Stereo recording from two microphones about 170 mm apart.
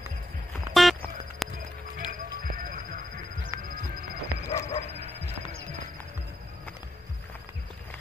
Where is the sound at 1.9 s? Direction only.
55° right (ahead or behind).